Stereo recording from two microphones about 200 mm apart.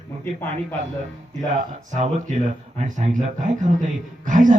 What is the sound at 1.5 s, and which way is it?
Speech, 35° right (ahead or behind).